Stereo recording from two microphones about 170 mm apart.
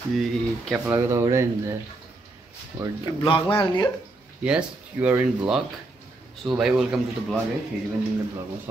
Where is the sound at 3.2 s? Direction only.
30° left (ahead or behind).